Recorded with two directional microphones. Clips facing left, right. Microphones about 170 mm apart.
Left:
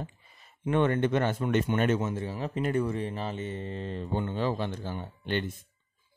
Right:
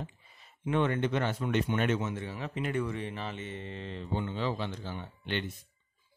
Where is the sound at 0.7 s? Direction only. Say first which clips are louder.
Left 3 dB; 50° left (ahead or behind).